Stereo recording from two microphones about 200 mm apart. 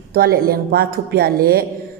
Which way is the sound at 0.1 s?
50° right (ahead or behind).